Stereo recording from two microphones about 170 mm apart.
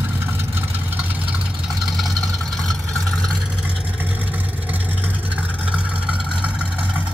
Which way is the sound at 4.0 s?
10° right (ahead or behind).